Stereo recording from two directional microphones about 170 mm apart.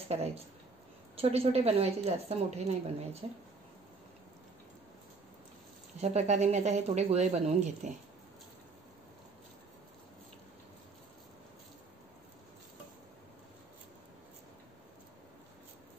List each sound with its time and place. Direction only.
0.1 s speech: 40° right (ahead or behind)
5.9 s speech: 40° right (ahead or behind)